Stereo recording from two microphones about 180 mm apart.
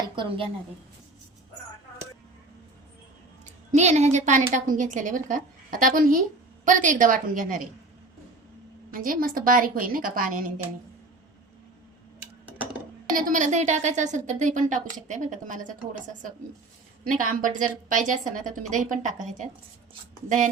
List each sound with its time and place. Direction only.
3.4 s a woman's voice: 40° right (ahead or behind)
8.9 s a woman's voice: 50° right (ahead or behind)
12.5 s a sound: 10° right (ahead or behind)
13.1 s a woman's voice: 45° right (ahead or behind)
17.1 s a woman's voice: 50° right (ahead or behind)